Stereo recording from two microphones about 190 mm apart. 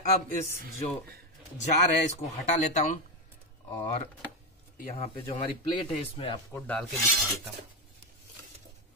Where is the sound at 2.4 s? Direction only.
40° left (ahead or behind).